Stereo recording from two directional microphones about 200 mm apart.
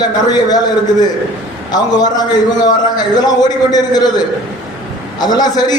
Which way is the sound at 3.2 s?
20° left (ahead or behind).